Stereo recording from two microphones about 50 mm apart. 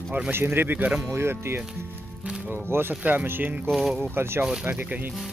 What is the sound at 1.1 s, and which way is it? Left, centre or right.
Speech, right.